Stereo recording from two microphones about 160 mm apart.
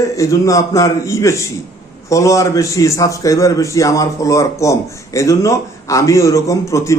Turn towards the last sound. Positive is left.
turn(degrees=20)  # may be behind; listen again after turning